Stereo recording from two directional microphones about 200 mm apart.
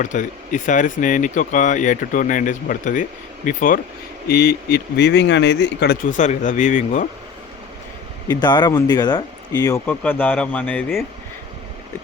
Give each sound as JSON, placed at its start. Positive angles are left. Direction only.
{"t": 0.0, "sound": "speech", "side_deg": 40}
{"t": 4.3, "sound": "speech", "side_deg": 55}
{"t": 8.3, "sound": "speech", "side_deg": 20}